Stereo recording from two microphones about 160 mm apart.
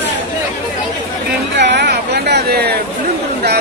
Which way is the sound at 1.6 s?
90° right.